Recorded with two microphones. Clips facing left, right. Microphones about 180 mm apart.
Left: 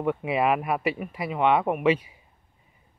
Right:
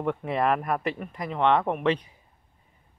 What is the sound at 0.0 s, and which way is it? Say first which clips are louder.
Speech: left 2 dB; 5° left (ahead or behind).